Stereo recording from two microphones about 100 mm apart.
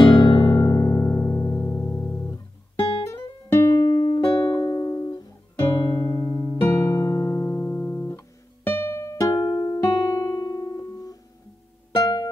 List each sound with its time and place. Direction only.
0.0 s music: 45° left (ahead or behind); by 3.8 s 30° left (ahead or behind)
3.8 s music: 45° left (ahead or behind); by 9.2 s 25° left (ahead or behind)
9.2 s music: 40° left (ahead or behind)
9.7 s music: 30° left (ahead or behind); by 12.3 s 45° left (ahead or behind)